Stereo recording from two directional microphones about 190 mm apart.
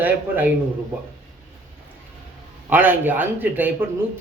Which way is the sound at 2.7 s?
10° right (ahead or behind).